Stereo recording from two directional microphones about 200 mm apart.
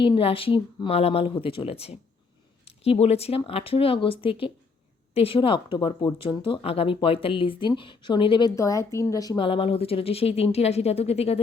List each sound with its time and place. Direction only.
0.0 s a woman's voice: 25° left (ahead or behind)